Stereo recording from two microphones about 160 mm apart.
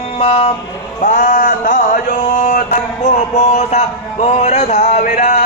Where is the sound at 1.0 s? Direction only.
55° left (ahead or behind).